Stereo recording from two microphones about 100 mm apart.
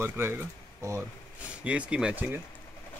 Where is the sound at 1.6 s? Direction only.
10° right (ahead or behind).